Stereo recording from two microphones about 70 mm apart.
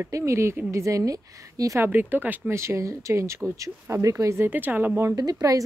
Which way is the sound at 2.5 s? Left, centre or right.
Right.